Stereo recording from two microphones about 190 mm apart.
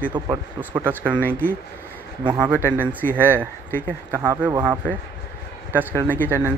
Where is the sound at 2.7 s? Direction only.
10° left (ahead or behind).